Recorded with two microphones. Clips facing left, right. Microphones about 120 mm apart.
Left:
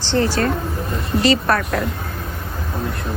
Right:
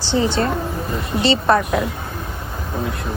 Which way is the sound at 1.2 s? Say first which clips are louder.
Right 1 dB; 25° right (ahead or behind).